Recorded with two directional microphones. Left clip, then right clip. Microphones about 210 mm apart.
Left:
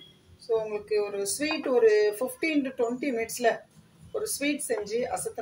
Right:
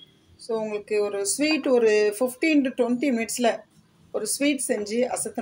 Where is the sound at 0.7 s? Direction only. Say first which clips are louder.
Right 3 dB; 50° right (ahead or behind).